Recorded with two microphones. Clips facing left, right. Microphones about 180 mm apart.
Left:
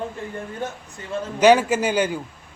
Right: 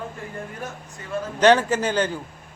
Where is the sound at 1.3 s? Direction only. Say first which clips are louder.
Left 2 dB; 10° left (ahead or behind).